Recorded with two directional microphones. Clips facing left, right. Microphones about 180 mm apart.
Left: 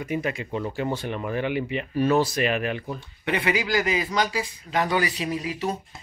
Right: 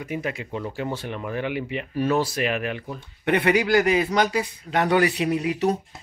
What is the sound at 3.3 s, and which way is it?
A man's voice, 55° right (ahead or behind).